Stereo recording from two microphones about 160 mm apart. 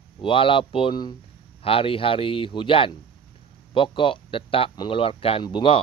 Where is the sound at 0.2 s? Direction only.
30° left (ahead or behind).